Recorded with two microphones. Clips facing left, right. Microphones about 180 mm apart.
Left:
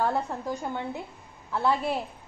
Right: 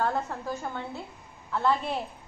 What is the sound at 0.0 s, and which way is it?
A woman's voice, 15° left (ahead or behind).